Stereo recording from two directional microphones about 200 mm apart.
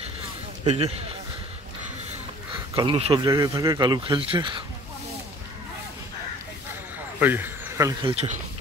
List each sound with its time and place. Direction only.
0.7 s a man's voice: 30° right (ahead or behind)
2.7 s speech: 25° right (ahead or behind)
7.2 s speech: 10° right (ahead or behind)